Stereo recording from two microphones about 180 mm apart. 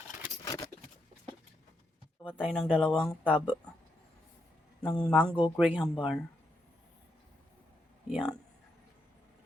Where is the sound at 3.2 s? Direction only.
10° right (ahead or behind).